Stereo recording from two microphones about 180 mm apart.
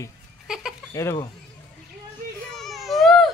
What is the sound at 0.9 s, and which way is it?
Speech, 15° left (ahead or behind).